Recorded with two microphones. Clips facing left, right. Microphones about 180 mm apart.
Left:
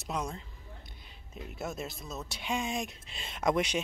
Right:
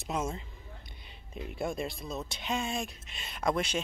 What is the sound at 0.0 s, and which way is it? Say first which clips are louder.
Speech: right 2 dB; 5° right (ahead or behind).